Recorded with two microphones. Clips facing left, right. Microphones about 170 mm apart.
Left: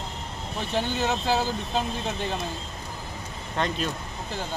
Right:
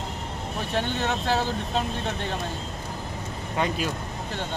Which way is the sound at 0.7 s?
Centre (ahead or behind).